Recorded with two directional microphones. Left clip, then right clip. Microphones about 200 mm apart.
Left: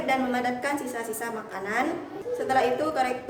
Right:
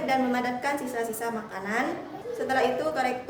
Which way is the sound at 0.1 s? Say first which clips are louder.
Left 1 dB; 5° right (ahead or behind).